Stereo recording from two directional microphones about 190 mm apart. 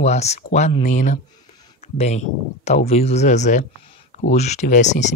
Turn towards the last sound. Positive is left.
turn(degrees=40)  # may be behind; listen again after turning